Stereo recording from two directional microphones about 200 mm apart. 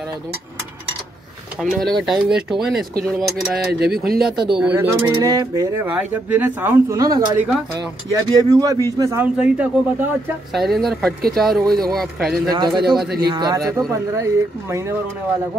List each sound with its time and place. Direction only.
1.6 s speech: centre (ahead or behind)
12.4 s speech: 20° right (ahead or behind)